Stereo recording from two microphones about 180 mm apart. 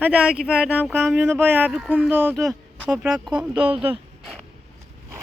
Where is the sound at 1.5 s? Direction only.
10° right (ahead or behind).